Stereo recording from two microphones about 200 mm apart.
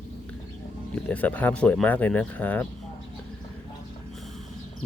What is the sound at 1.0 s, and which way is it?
Speech, 5° left (ahead or behind).